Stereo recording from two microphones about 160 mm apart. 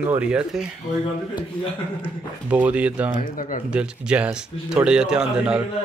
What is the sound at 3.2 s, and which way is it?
Speech, 60° left (ahead or behind).